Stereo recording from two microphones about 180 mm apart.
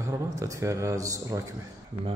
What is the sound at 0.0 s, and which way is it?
Speech, 15° right (ahead or behind).